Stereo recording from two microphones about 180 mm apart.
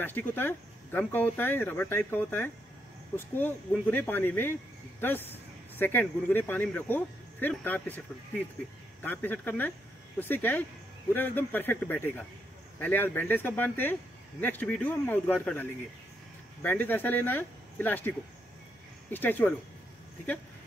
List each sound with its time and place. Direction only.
0.0 s speech: 10° left (ahead or behind)
9.0 s speech: 10° left (ahead or behind)